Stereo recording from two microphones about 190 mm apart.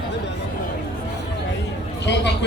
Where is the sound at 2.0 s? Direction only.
65° left (ahead or behind).